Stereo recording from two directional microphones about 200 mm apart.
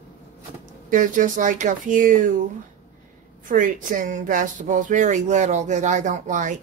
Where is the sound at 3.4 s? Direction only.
40° right (ahead or behind).